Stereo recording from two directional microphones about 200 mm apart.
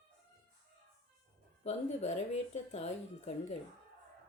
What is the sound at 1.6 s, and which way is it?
Speech, 35° left (ahead or behind).